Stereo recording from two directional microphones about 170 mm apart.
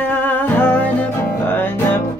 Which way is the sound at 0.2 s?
10° left (ahead or behind).